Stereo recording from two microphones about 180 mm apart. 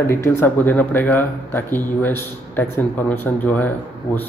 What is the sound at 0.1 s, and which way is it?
Speech, 15° left (ahead or behind).